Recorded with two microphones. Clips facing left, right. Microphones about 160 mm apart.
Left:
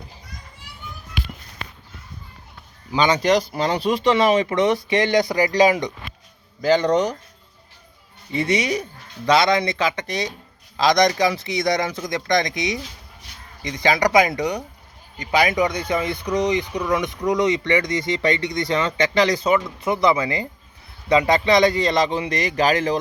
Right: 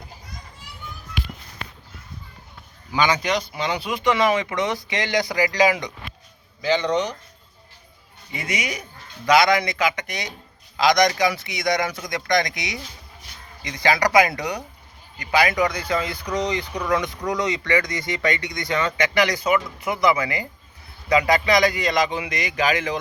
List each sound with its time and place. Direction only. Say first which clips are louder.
2.9 s a man's voice: left 4 dB; 35° left (ahead or behind)
6.6 s speech: left 4 dB; 45° left (ahead or behind)
8.3 s a man's voice: left 8 dB; 30° left (ahead or behind)